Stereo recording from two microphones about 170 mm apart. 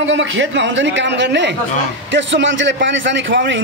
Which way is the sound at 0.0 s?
90° right.